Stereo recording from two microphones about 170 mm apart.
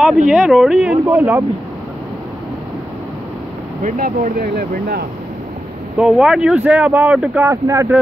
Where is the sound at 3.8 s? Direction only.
55° right (ahead or behind).